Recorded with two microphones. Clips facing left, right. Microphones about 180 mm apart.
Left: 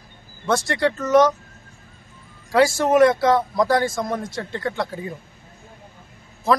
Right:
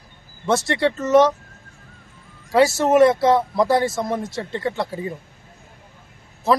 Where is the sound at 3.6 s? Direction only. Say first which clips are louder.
Right 1 dB; 25° right (ahead or behind).